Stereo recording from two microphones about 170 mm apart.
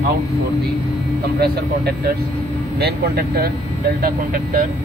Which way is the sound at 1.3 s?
70° right (ahead or behind).